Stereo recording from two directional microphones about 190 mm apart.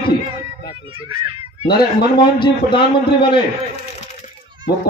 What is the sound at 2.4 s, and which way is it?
Speech, 25° left (ahead or behind).